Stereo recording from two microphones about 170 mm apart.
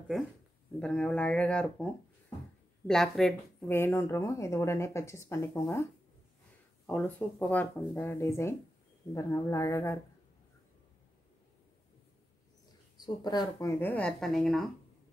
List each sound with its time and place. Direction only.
0.7 s speech: 5° left (ahead or behind)
3.6 s speech: 15° left (ahead or behind)
6.9 s speech: 10° left (ahead or behind)
12.9 s speech: 25° left (ahead or behind); by 14.7 s centre (ahead or behind)